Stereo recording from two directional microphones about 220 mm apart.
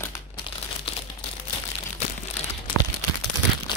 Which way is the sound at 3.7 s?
20° left (ahead or behind).